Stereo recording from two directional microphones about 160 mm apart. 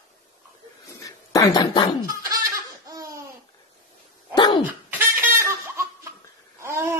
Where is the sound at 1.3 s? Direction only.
25° left (ahead or behind).